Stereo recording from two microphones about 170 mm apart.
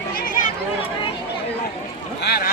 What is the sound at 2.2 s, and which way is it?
Boat, 70° left (ahead or behind).